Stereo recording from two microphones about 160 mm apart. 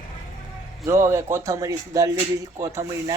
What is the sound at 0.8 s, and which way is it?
Speech, 20° right (ahead or behind).